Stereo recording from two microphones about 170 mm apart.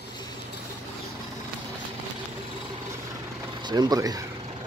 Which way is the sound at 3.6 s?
25° right (ahead or behind).